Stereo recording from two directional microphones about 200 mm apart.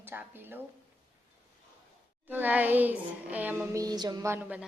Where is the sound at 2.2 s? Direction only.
10° right (ahead or behind).